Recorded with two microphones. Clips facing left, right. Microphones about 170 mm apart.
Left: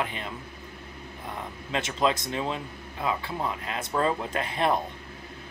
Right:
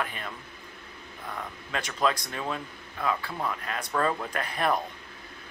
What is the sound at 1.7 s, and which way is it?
A man's voice, 25° left (ahead or behind).